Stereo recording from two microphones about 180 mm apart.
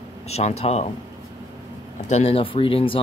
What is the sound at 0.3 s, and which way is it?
Speech, 35° left (ahead or behind).